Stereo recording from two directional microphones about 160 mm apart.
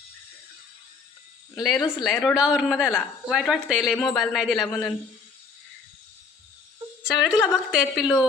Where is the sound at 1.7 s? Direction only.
25° left (ahead or behind).